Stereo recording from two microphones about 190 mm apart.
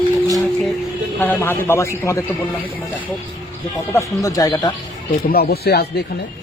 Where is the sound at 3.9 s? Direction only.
20° left (ahead or behind).